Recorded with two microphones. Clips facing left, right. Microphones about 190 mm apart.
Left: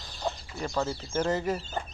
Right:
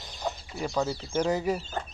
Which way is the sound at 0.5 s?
5° right (ahead or behind).